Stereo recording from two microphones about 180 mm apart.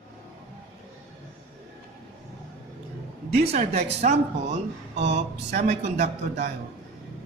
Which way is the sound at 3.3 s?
35° right (ahead or behind).